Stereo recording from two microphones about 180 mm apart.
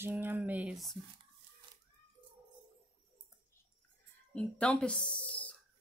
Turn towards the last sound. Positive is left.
turn(degrees=5)  # may be behind; listen again after turning